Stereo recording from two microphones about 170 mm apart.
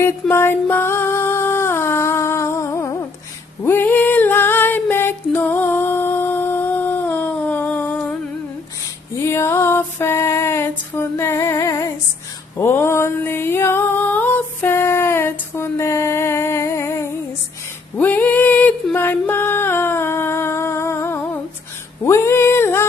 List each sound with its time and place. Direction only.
0.0 s music: 15° left (ahead or behind)
3.6 s female singing: 10° left (ahead or behind)
9.2 s female singing: 15° left (ahead or behind)
12.5 s music: 15° left (ahead or behind)
22.0 s a sound: 15° left (ahead or behind)